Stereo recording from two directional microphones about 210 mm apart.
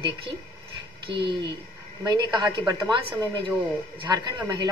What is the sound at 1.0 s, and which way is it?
Speech, 50° right (ahead or behind).